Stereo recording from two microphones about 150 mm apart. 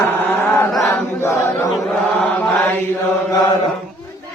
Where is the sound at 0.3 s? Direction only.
15° left (ahead or behind).